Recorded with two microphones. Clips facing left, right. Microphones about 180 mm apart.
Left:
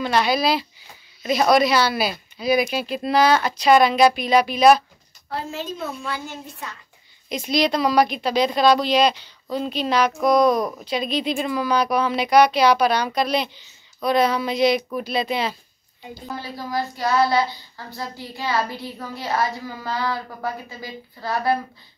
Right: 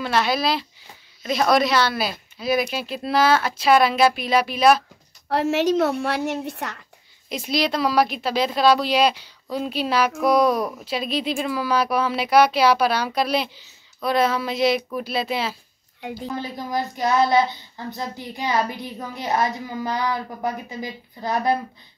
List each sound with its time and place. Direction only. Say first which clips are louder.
0.0 s a woman's voice: left 2 dB; centre (ahead or behind)
5.3 s a woman's voice: right 10 dB; 80° right
7.2 s a woman's voice: left 2 dB; 5° right (ahead or behind)
16.3 s a woman's voice: left 1 dB; 20° right (ahead or behind)